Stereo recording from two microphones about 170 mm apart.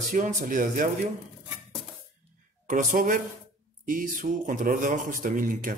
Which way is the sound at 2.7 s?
50° right (ahead or behind).